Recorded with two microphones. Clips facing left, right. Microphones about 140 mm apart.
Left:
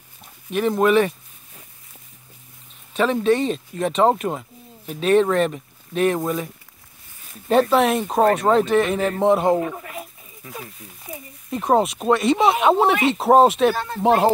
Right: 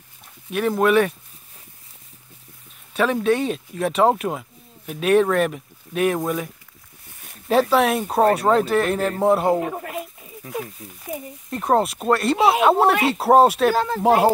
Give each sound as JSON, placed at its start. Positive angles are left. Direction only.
{"t": 0.5, "sound": "speech", "side_deg": 0}
{"t": 2.9, "sound": "speech", "side_deg": 0}
{"t": 11.5, "sound": "speech", "side_deg": 0}
{"t": 13.7, "sound": "speech", "side_deg": -90}
{"t": 14.0, "sound": "speech", "side_deg": -5}